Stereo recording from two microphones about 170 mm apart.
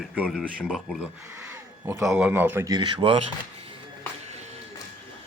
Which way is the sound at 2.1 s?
10° right (ahead or behind).